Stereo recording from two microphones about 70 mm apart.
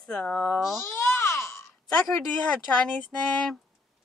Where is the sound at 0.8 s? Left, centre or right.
Left.